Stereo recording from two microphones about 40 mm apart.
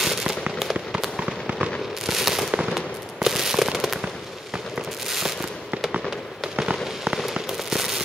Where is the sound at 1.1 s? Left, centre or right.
Right.